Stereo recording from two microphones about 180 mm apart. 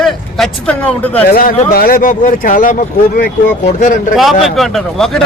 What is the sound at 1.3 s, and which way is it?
Speech, 55° left (ahead or behind).